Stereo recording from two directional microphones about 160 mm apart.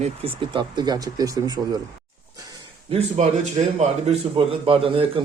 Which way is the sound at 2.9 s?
45° right (ahead or behind).